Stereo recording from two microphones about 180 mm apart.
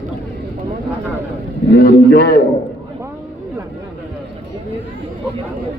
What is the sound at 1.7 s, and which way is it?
Speech, 70° left (ahead or behind).